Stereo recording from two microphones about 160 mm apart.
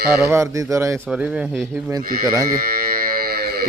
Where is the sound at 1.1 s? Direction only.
10° right (ahead or behind).